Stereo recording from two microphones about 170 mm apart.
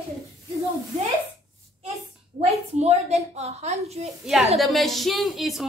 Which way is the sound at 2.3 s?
40° right (ahead or behind).